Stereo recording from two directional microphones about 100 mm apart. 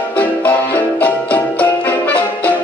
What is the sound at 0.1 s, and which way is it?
Music, 15° left (ahead or behind).